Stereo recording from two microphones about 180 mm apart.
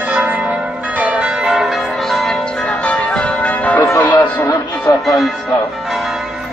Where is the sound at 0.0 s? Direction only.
10° right (ahead or behind); by 4.2 s 10° left (ahead or behind).